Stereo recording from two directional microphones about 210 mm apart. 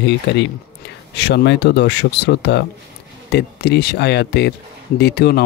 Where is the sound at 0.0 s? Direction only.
55° left (ahead or behind).